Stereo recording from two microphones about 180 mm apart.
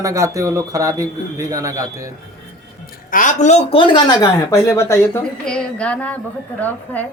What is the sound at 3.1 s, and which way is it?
Speech, 45° left (ahead or behind).